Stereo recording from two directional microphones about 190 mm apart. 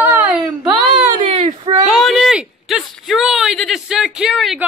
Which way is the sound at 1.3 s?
35° right (ahead or behind).